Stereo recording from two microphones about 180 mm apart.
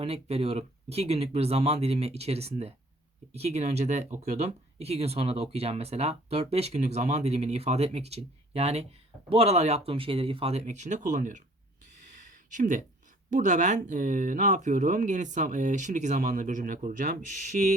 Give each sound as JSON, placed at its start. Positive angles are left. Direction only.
{"t": 0.0, "sound": "speech", "side_deg": -35}
{"t": 12.5, "sound": "speech", "side_deg": -45}